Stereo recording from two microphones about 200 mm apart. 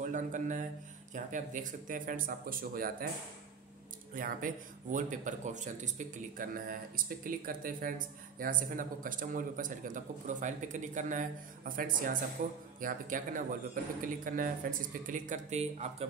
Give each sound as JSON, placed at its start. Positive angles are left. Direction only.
{"t": 0.0, "sound": "speech", "side_deg": -40}
{"t": 4.1, "sound": "speech", "side_deg": -45}